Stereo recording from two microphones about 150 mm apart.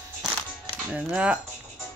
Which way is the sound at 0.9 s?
10° right (ahead or behind).